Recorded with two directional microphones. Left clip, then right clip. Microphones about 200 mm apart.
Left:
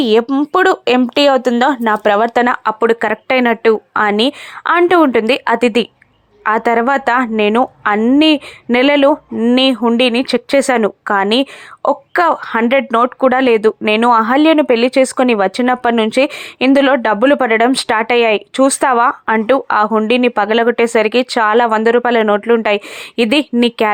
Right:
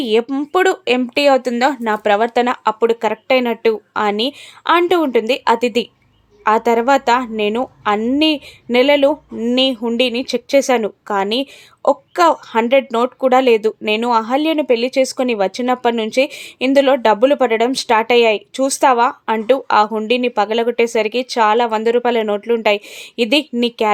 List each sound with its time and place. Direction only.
0.0 s speech: 20° left (ahead or behind)